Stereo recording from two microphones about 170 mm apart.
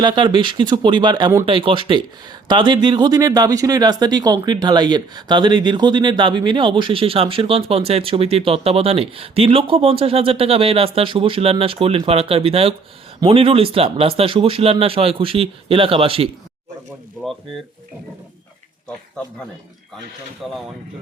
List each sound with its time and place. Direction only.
0.0 s speech: 25° right (ahead or behind)
1.5 s speech: 30° right (ahead or behind)
20.4 s speech: centre (ahead or behind)